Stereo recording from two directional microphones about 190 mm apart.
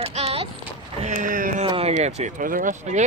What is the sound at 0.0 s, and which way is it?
Clip-clop, 30° right (ahead or behind).